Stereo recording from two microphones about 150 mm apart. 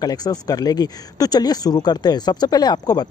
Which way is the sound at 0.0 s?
25° left (ahead or behind).